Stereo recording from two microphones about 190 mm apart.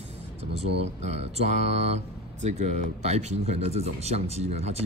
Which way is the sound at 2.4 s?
35° right (ahead or behind).